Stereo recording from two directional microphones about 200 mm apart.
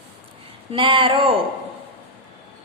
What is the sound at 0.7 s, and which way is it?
Speech, 25° right (ahead or behind).